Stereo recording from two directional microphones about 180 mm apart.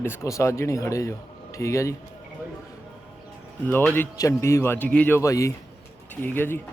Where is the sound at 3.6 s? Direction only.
10° left (ahead or behind).